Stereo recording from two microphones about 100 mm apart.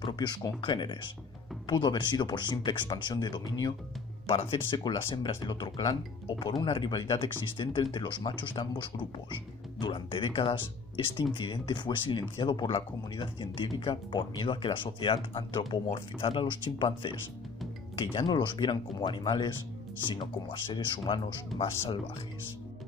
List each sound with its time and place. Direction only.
0.0 s speech: 50° left (ahead or behind)
4.3 s speech: 55° left (ahead or behind)